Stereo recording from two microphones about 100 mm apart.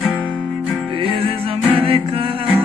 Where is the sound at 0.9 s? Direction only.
65° right (ahead or behind).